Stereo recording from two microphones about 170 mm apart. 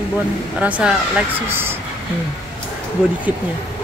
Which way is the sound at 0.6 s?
10° right (ahead or behind).